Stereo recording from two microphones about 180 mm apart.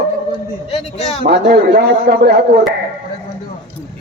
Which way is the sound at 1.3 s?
60° right (ahead or behind).